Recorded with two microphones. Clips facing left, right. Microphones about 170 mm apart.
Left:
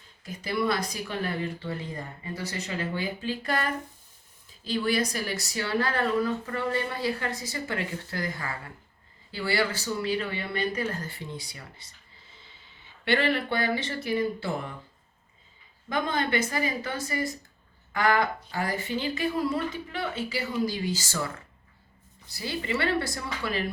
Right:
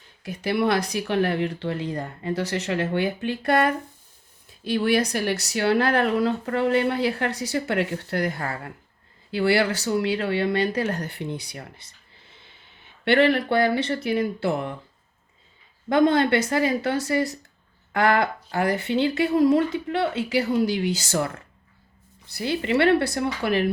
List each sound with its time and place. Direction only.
0.2 s speech: 70° right (ahead or behind)
2.9 s speech: 65° right (ahead or behind)
12.3 s snort: 65° right (ahead or behind)
13.1 s speech: 60° right (ahead or behind)
15.9 s speech: 70° right (ahead or behind)